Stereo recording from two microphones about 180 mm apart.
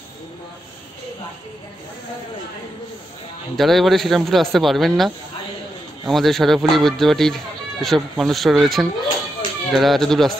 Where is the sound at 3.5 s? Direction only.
Centre (ahead or behind).